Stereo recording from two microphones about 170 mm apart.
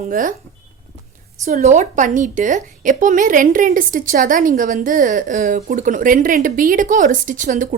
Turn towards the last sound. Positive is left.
turn(degrees=-50)  # may be behind; listen again after turning